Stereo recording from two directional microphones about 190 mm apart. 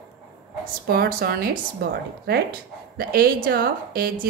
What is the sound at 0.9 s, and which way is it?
A woman's voice, 50° right (ahead or behind).